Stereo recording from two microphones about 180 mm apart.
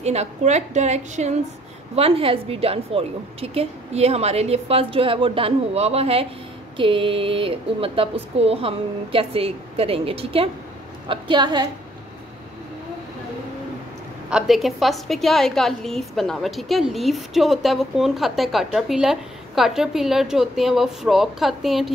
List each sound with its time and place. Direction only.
0.0 s a woman's voice: 35° right (ahead or behind)
14.3 s a woman's voice: centre (ahead or behind)